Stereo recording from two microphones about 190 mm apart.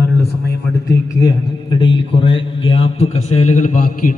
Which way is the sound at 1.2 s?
25° left (ahead or behind).